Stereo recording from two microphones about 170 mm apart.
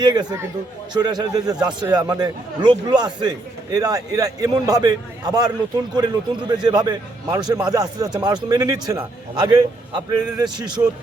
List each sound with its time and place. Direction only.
0.0 s a man's voice: 25° right (ahead or behind)